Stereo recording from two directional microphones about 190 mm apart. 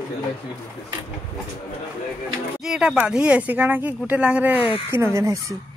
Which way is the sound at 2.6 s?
5° right (ahead or behind).